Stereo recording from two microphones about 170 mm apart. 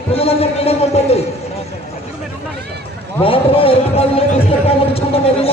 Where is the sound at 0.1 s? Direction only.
35° left (ahead or behind).